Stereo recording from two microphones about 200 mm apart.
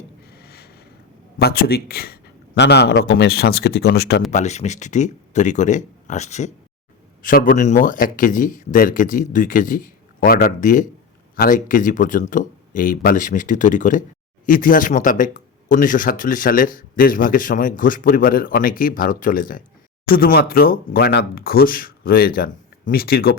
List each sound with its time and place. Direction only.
0.3 s a sound: 50° left (ahead or behind)
1.4 s speech: 50° left (ahead or behind)
4.3 s speech: 35° left (ahead or behind)